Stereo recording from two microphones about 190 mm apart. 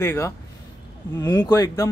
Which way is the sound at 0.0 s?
10° left (ahead or behind).